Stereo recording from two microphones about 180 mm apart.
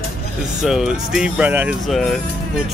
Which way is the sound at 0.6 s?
5° right (ahead or behind).